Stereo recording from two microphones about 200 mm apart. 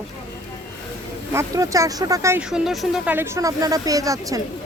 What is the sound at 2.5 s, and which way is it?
Speech, centre (ahead or behind).